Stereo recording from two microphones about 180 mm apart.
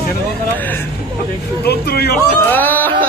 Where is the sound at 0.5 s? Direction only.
10° left (ahead or behind).